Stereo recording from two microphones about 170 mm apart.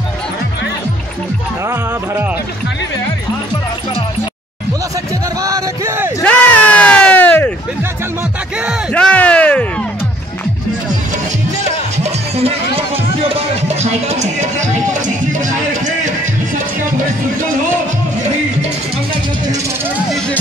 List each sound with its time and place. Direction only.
5.4 s music: 20° right (ahead or behind)
6.2 s a sound: 10° left (ahead or behind)
8.9 s speech: 10° left (ahead or behind)
12.0 s music: 35° right (ahead or behind)